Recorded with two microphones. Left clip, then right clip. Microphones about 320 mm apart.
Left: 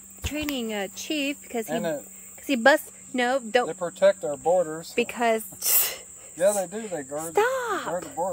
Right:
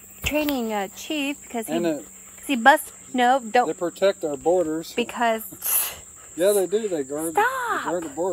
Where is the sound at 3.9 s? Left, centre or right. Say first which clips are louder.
Left 1 dB; left.